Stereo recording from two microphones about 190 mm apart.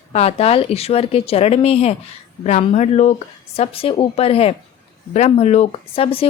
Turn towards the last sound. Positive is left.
turn(degrees=30)  # may be behind; listen again after turning